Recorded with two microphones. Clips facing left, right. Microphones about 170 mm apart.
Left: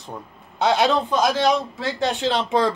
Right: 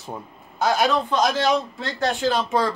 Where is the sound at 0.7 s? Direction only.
25° left (ahead or behind).